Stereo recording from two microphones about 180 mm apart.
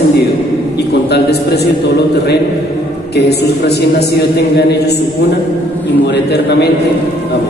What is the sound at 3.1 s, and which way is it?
A man's voice, 65° left (ahead or behind).